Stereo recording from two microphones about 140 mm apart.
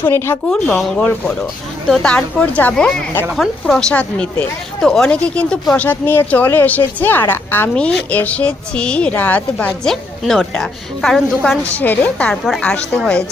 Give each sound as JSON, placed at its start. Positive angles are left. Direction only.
{"t": 0.0, "sound": "a woman's voice", "side_deg": 15}
{"t": 0.5, "sound": "a woman's voice", "side_deg": 5}